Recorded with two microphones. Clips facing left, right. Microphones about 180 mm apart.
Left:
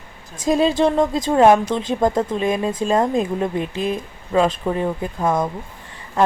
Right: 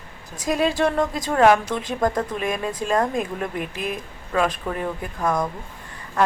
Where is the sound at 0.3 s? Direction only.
25° left (ahead or behind).